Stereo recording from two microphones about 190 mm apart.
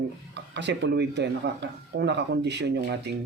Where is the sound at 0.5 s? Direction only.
65° right (ahead or behind).